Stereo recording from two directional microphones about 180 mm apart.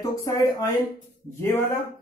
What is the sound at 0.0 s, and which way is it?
Speech, 20° left (ahead or behind).